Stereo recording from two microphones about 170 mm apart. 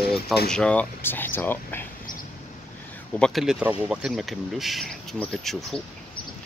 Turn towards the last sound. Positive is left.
turn(degrees=5)  # may be behind; listen again after turning